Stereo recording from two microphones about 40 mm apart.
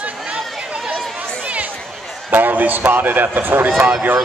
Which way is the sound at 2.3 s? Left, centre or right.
Right.